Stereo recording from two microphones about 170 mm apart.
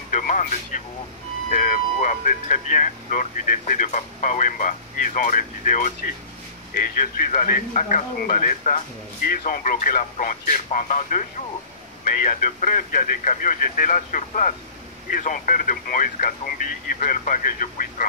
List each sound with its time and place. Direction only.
0.1 s speech: 50° left (ahead or behind)